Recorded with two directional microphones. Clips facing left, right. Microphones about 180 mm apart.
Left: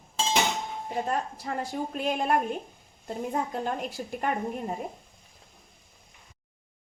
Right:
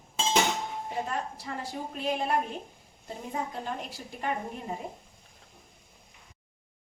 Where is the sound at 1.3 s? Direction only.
45° left (ahead or behind).